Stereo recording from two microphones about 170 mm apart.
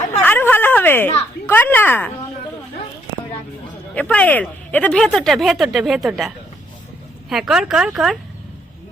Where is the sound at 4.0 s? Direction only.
10° left (ahead or behind).